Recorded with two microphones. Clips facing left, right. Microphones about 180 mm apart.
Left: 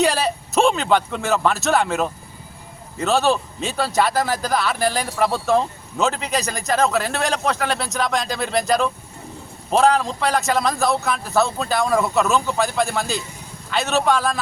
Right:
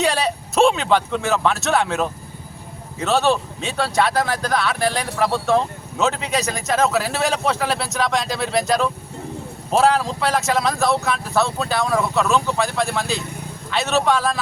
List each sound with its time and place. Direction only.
0.0 s speech: centre (ahead or behind)